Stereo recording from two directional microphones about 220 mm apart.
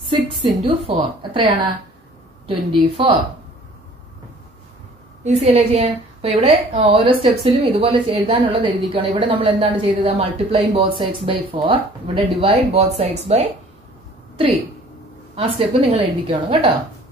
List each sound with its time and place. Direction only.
0.8 s a woman's voice: 25° right (ahead or behind)
5.2 s a woman's voice: 30° right (ahead or behind)
15.3 s a woman's voice: 25° right (ahead or behind)